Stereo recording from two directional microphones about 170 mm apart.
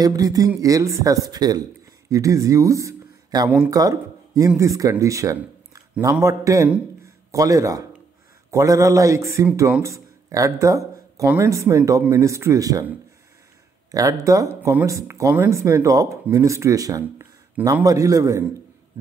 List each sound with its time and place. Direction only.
0.0 s speech: 20° right (ahead or behind)
3.4 s speech: 5° right (ahead or behind)
3.7 s speech: 20° right (ahead or behind)
13.9 s speech: 20° right (ahead or behind)